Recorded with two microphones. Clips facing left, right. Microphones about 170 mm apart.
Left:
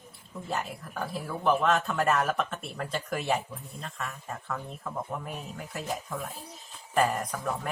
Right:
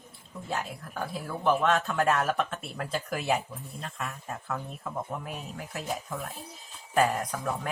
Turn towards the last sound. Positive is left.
turn(degrees=0)  # may be behind; listen again after turning